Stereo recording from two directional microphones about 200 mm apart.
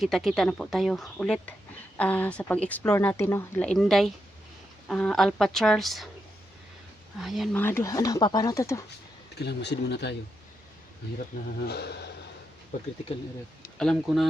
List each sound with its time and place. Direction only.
0.0 s speech: centre (ahead or behind)
7.2 s speech: centre (ahead or behind)
7.5 s speech: 10° left (ahead or behind)
9.3 s speech: 55° left (ahead or behind)
11.7 s speech: 55° left (ahead or behind)
13.7 s speech: 5° left (ahead or behind)